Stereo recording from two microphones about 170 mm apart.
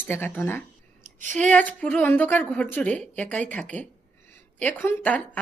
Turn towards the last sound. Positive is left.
turn(degrees=10)  # may be behind; listen again after turning